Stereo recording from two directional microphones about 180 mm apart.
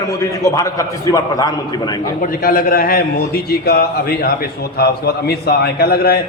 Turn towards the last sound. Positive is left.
turn(degrees=60)  # may be behind; listen again after turning